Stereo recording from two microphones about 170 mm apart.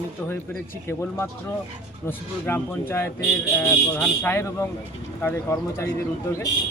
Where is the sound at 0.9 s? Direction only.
15° left (ahead or behind).